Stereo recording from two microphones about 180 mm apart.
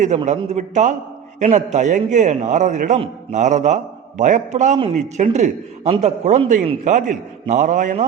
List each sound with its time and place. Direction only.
0.4 s a man's voice: 40° right (ahead or behind)